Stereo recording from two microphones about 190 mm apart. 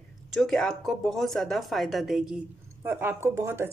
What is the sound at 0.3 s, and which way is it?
A woman's voice, centre (ahead or behind).